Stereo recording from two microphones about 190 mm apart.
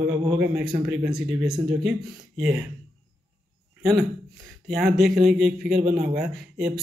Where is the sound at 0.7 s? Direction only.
30° right (ahead or behind).